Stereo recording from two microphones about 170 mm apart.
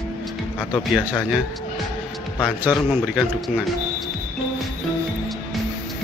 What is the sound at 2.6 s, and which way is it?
Speech, 5° right (ahead or behind).